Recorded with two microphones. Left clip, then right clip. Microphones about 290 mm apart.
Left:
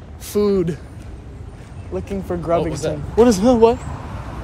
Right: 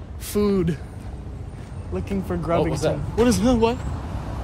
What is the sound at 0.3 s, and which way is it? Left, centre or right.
Speech, centre.